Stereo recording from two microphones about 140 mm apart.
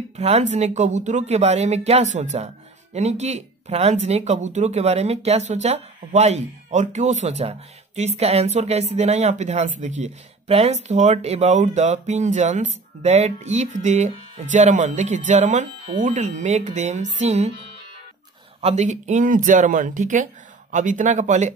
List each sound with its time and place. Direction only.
0.1 s speech: 50° right (ahead or behind)
18.6 s speech: 50° right (ahead or behind)